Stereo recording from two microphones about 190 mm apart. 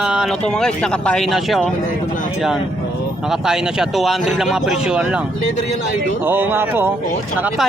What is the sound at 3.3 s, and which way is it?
Speech, centre (ahead or behind).